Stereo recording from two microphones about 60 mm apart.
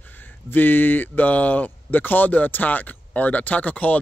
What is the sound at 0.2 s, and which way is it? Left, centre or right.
Speech, left.